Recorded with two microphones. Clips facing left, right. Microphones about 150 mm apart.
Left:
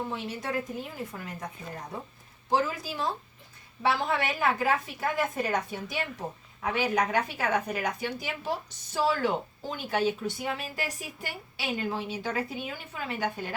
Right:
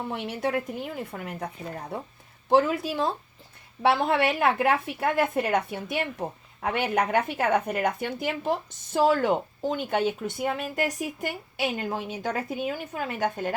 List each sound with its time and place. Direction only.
0.1 s a woman's voice: 65° right (ahead or behind)
2.5 s a woman's voice: 65° right (ahead or behind)
3.8 s a woman's voice: 60° right (ahead or behind)